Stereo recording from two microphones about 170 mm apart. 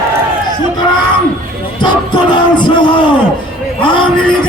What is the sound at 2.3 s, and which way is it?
Music, 30° left (ahead or behind).